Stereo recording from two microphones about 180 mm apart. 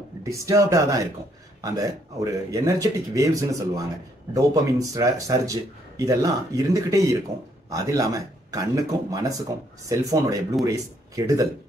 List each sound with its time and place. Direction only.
0.2 s speech: 15° right (ahead or behind)